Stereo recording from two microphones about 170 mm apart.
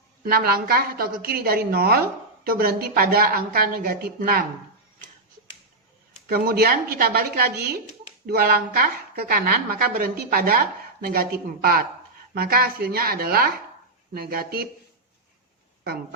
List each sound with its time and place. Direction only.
0.3 s a woman's voice: 65° right (ahead or behind)
6.2 s a woman's voice: 65° right (ahead or behind)